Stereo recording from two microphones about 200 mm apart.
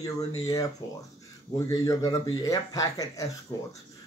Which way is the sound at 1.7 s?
15° left (ahead or behind).